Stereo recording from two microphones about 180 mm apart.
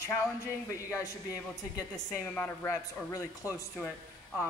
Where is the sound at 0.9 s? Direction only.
20° left (ahead or behind).